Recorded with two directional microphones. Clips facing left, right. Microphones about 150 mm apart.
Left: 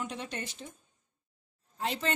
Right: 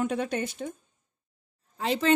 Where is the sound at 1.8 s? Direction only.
90° right.